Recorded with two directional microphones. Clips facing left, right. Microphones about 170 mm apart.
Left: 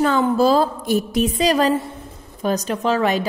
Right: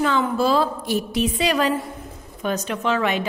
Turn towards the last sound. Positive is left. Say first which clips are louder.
# left 3 dB
turn(degrees=35)  # may be behind; listen again after turning